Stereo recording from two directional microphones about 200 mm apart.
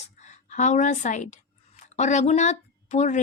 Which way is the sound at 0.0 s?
35° left (ahead or behind).